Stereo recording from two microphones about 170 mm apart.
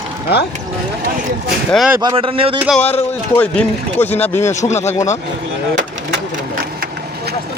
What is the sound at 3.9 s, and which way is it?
Speech, 40° left (ahead or behind).